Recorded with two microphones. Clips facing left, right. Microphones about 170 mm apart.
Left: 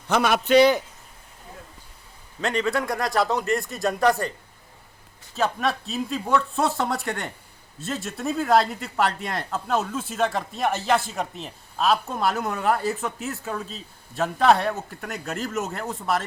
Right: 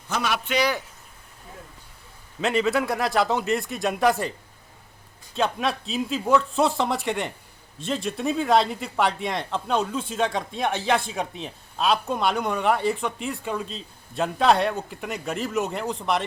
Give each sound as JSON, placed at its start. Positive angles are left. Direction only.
{"t": 0.1, "sound": "a man's voice", "side_deg": 55}
{"t": 0.4, "sound": "speech", "side_deg": 30}
{"t": 2.4, "sound": "speech", "side_deg": -5}
{"t": 5.4, "sound": "speech", "side_deg": 0}